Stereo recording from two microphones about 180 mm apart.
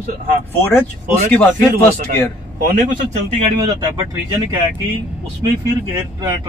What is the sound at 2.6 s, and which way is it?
Speech, 50° right (ahead or behind).